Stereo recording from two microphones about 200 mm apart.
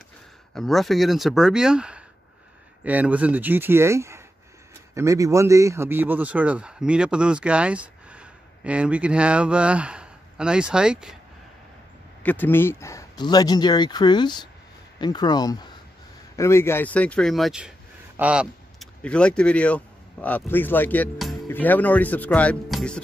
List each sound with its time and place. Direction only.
0.6 s speech: centre (ahead or behind)
12.2 s speech: 10° left (ahead or behind)